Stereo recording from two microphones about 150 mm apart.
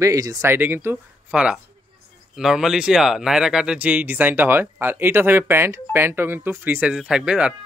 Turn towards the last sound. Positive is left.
turn(degrees=-5)  # may be behind; listen again after turning